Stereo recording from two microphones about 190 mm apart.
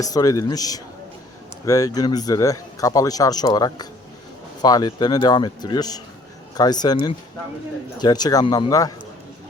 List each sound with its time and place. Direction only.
0.0 s speech: 20° left (ahead or behind)